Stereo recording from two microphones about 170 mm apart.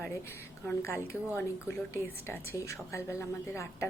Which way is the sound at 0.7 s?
15° left (ahead or behind).